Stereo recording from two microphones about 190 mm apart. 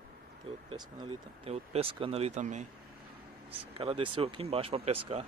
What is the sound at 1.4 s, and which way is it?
Speech, 30° right (ahead or behind).